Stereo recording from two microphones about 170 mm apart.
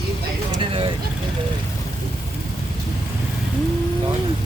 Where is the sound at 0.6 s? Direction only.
30° right (ahead or behind).